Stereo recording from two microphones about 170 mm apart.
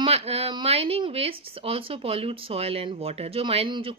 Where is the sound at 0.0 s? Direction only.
35° right (ahead or behind).